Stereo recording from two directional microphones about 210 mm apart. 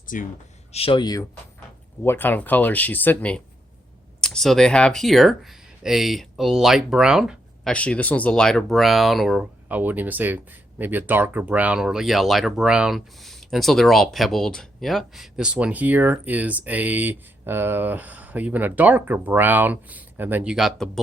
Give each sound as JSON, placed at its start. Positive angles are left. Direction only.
{"t": 0.1, "sound": "speech", "side_deg": 40}
{"t": 0.7, "sound": "speech", "side_deg": 25}
{"t": 2.0, "sound": "speech", "side_deg": 10}